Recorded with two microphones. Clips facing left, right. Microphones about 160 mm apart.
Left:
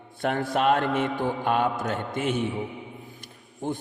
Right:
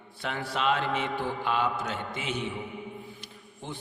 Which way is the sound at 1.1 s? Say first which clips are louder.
Left 4 dB; 15° left (ahead or behind).